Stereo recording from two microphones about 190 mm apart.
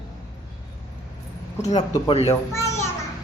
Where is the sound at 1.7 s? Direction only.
20° left (ahead or behind).